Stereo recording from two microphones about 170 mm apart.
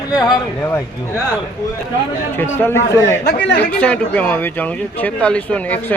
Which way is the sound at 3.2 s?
85° left.